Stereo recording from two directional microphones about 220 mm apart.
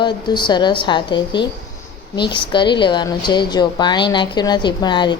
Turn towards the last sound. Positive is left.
turn(degrees=20)  # may be behind; listen again after turning